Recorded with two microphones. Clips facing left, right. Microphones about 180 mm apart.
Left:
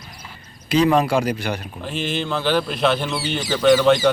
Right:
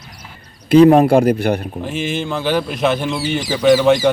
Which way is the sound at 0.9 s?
55° right (ahead or behind).